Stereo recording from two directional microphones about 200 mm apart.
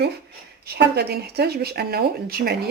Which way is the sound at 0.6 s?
55° right (ahead or behind).